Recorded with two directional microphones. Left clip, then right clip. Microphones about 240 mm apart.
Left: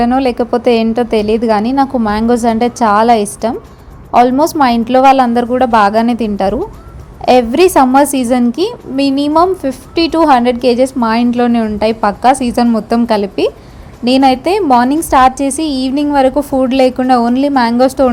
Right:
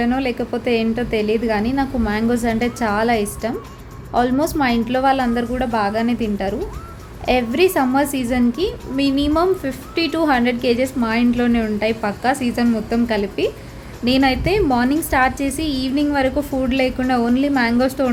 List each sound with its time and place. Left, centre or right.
0.0 s a woman's voice: left